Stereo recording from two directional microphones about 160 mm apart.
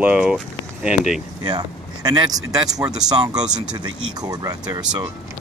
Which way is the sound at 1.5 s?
25° right (ahead or behind).